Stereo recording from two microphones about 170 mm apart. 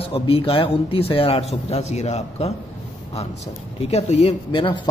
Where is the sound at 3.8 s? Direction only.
40° left (ahead or behind).